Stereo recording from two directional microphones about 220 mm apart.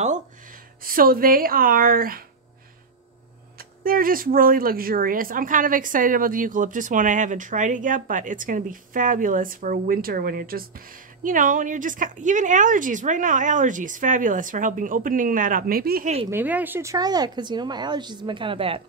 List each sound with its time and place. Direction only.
0.8 s a woman's voice: 40° right (ahead or behind)
3.8 s a woman's voice: 40° right (ahead or behind)
16.3 s speech: 10° right (ahead or behind); by 18.8 s 25° right (ahead or behind)